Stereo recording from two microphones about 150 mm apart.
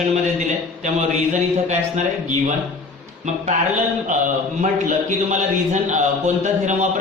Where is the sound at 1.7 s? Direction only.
55° right (ahead or behind).